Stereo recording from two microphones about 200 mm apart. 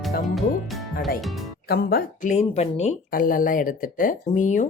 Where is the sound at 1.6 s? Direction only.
50° left (ahead or behind).